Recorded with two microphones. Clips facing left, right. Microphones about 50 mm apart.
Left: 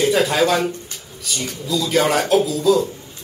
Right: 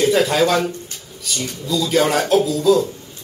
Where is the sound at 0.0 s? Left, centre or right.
Centre.